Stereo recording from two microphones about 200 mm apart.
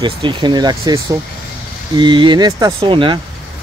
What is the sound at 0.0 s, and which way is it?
Speech, 25° right (ahead or behind).